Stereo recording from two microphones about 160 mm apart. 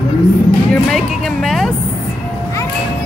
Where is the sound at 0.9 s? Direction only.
5° left (ahead or behind).